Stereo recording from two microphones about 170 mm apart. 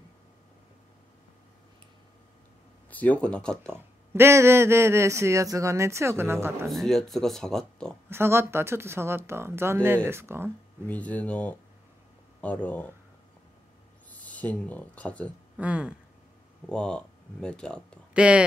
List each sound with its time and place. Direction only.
2.9 s speech: 10° left (ahead or behind)
3.7 s speech: 15° right (ahead or behind)
6.7 s speech: centre (ahead or behind)
8.1 s speech: 15° right (ahead or behind)
10.9 s speech: 10° left (ahead or behind)
14.2 s speech: 10° left (ahead or behind)
15.5 s speech: 5° right (ahead or behind)
16.6 s speech: 5° left (ahead or behind)
18.1 s speech: 5° right (ahead or behind)